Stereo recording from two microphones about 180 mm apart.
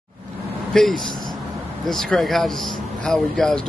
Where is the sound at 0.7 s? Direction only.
Centre (ahead or behind).